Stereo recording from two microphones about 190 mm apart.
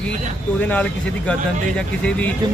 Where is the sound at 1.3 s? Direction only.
5° left (ahead or behind).